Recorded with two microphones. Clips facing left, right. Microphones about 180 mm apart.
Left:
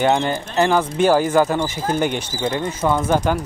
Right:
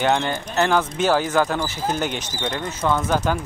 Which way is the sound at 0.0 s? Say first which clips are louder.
Left 3 dB; 5° left (ahead or behind).